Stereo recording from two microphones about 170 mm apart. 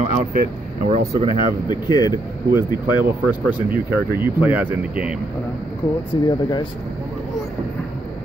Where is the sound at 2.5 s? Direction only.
15° right (ahead or behind).